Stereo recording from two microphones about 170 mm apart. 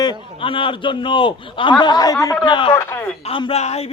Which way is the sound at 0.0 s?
30° left (ahead or behind).